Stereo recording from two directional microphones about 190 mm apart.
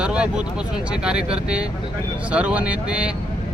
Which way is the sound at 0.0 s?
5° right (ahead or behind).